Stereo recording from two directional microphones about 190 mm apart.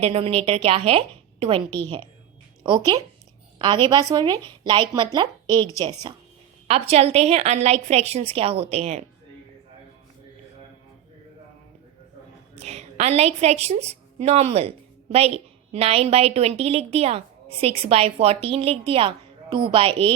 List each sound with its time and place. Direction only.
0.0 s a woman's voice: 30° right (ahead or behind)
12.5 s a woman's voice: 35° right (ahead or behind)